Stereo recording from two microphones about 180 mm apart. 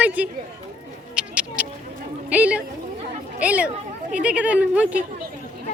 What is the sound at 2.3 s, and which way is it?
Speech, 10° right (ahead or behind).